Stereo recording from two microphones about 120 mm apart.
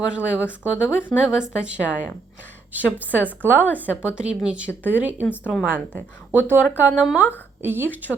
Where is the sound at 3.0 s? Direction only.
15° right (ahead or behind).